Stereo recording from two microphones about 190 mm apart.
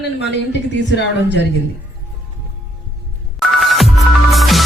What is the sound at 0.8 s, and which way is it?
Speech, 70° left (ahead or behind).